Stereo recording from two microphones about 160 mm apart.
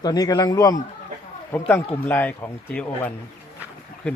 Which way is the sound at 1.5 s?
5° left (ahead or behind).